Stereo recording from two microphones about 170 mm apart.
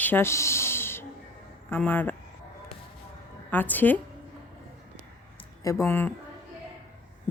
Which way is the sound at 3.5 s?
10° left (ahead or behind).